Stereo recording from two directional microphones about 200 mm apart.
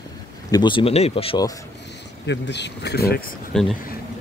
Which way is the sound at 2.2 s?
60° left (ahead or behind).